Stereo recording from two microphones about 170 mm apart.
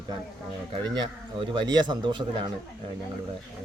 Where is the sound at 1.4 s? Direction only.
25° right (ahead or behind).